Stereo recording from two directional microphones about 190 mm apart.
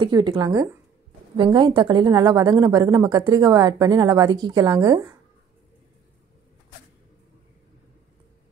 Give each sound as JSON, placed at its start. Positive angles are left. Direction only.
{"t": 0.0, "sound": "a woman's voice", "side_deg": -25}